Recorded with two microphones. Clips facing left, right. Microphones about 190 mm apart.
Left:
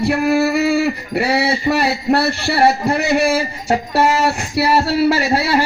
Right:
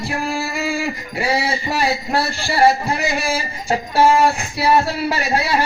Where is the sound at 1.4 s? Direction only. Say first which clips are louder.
Left 4 dB; 65° left (ahead or behind).